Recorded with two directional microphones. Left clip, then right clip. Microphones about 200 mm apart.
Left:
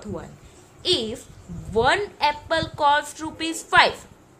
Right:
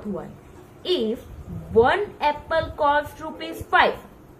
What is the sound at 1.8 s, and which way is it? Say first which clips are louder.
A woman's voice: right 1 dB; 55° left (ahead or behind).